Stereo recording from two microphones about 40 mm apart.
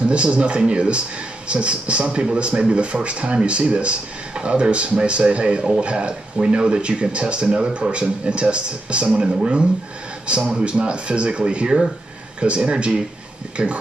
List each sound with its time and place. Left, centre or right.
0.1 s speech: right